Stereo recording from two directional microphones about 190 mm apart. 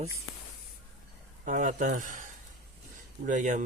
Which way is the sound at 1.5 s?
40° right (ahead or behind).